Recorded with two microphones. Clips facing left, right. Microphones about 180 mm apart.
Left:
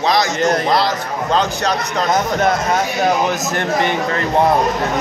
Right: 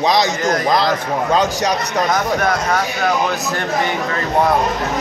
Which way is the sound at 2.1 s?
25° left (ahead or behind).